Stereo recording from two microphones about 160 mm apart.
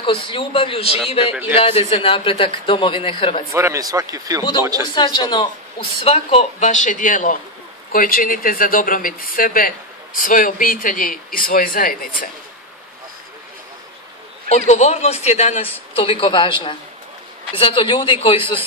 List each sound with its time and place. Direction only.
0.0 s speech: 30° left (ahead or behind)
3.5 s speech: 20° right (ahead or behind)
4.4 s speech: 30° left (ahead or behind); by 12.1 s 60° left (ahead or behind)
14.5 s a man's voice: 45° left (ahead or behind)